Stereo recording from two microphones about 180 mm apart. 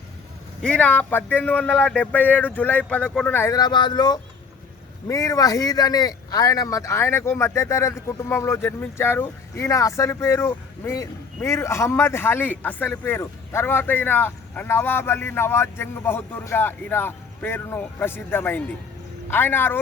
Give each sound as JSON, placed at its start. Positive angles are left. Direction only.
{"t": 0.6, "sound": "speech", "side_deg": 5}